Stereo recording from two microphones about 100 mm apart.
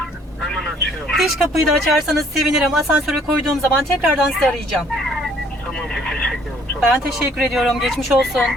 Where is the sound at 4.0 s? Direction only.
5° right (ahead or behind).